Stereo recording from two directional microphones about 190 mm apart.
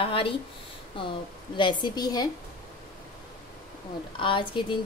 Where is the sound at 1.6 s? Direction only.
25° left (ahead or behind).